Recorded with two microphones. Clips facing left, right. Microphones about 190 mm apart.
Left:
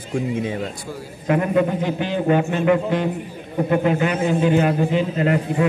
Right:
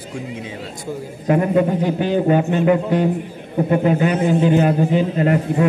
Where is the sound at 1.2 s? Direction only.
30° right (ahead or behind).